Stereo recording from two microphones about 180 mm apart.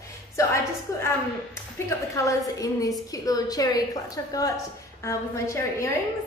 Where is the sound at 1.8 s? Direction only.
15° left (ahead or behind).